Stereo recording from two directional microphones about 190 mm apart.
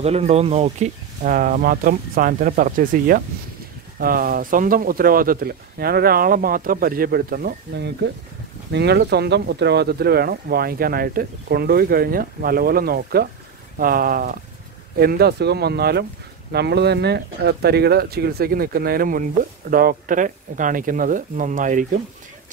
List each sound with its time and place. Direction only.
0.0 s speech: 35° right (ahead or behind)